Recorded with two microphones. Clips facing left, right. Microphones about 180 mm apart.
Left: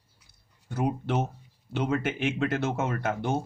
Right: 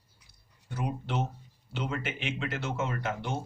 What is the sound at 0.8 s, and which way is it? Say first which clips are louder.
Speech: left 5 dB; 55° left (ahead or behind).